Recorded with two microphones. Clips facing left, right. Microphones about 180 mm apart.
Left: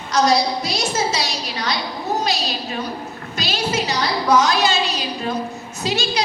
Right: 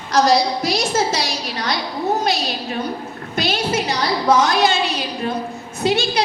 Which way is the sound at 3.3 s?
55° right (ahead or behind).